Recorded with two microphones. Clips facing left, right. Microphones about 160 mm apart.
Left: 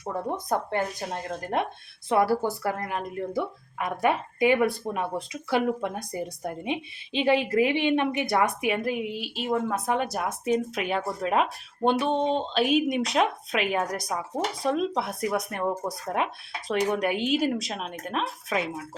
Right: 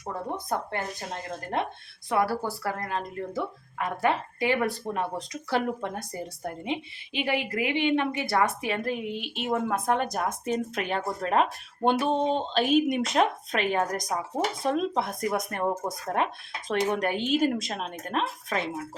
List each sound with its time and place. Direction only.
2.0 s a woman's voice: 25° left (ahead or behind); by 15.6 s centre (ahead or behind)
15.6 s speech: 15° right (ahead or behind)
16.1 s speech: 5° left (ahead or behind)